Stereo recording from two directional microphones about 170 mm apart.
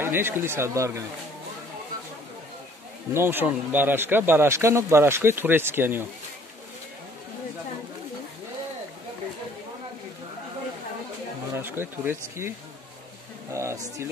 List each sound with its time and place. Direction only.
0.0 s speech: 15° right (ahead or behind)
3.1 s speech: 15° right (ahead or behind)
11.5 s speech: 15° right (ahead or behind)